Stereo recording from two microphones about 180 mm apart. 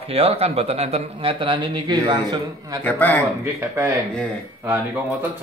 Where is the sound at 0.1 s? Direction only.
35° right (ahead or behind).